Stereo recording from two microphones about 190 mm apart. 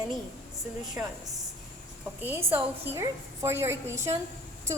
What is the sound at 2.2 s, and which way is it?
A woman's voice, 10° right (ahead or behind).